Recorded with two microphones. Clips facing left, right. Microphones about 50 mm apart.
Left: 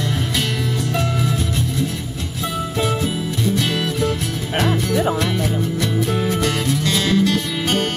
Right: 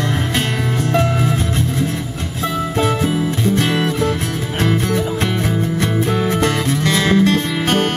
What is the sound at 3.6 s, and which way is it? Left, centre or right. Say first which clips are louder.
Music: right 3 dB; right.